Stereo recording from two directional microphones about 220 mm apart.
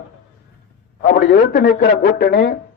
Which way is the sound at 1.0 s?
40° left (ahead or behind).